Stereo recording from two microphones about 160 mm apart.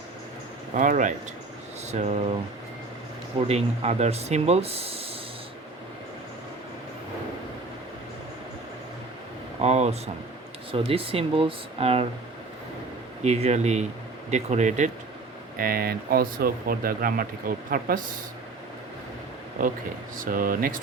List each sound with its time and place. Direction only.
0.7 s speech: 55° right (ahead or behind)
3.3 s speech: 40° right (ahead or behind)
9.6 s air conditioning: 40° right (ahead or behind)
10.7 s speech: 35° right (ahead or behind)
13.2 s speech: 40° right (ahead or behind)
15.5 s speech: 65° right (ahead or behind)
20.1 s speech: 60° right (ahead or behind)